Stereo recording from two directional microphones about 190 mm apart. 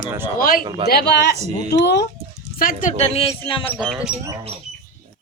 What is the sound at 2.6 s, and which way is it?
Speech, 45° left (ahead or behind).